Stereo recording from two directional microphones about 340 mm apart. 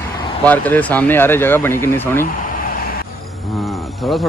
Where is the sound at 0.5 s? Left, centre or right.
Centre.